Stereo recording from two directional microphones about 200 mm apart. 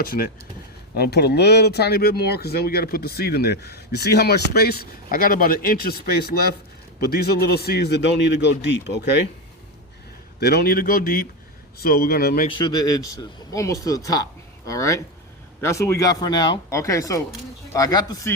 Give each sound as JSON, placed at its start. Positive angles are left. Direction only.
{"t": 0.0, "sound": "a man's voice", "side_deg": 50}
{"t": 10.4, "sound": "speech", "side_deg": 55}
{"t": 12.5, "sound": "speech", "side_deg": 20}